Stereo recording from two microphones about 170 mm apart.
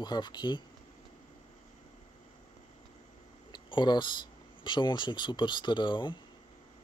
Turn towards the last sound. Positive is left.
turn(degrees=30)  # may be behind; listen again after turning